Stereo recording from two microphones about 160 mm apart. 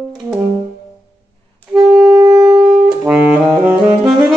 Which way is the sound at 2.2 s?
20° right (ahead or behind).